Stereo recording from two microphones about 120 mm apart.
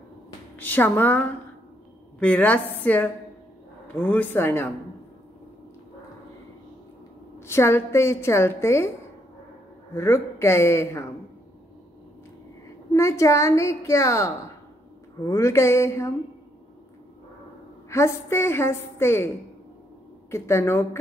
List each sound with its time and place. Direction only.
0.6 s a woman's voice: 15° left (ahead or behind)
7.3 s a woman's voice: 20° left (ahead or behind)
9.9 s a woman's voice: 20° left (ahead or behind)
12.9 s a woman's voice: 25° left (ahead or behind)
17.8 s a woman's voice: 25° left (ahead or behind)
20.2 s a woman's voice: 25° left (ahead or behind)